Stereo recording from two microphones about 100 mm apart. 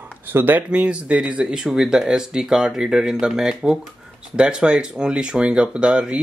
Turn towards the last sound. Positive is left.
turn(degrees=-10)  # may be behind; listen again after turning